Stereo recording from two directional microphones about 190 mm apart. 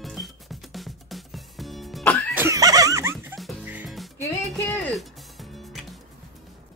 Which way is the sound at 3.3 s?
5° right (ahead or behind).